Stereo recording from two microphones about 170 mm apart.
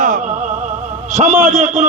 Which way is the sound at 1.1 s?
40° right (ahead or behind).